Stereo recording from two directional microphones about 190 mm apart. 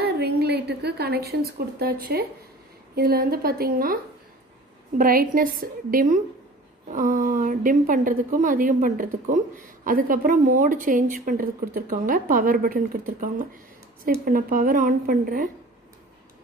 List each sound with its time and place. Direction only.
0.0 s a woman's voice: 60° right (ahead or behind)